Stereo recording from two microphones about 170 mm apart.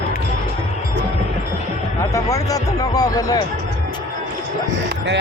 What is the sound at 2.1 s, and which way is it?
Speech, 20° left (ahead or behind).